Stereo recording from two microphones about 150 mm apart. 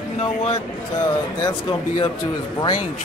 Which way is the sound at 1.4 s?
30° left (ahead or behind).